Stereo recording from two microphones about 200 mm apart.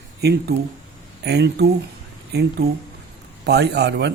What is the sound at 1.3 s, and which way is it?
Speech, 55° right (ahead or behind).